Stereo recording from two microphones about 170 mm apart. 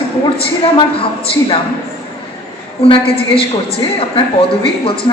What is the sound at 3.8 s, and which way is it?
A woman's voice, 30° left (ahead or behind).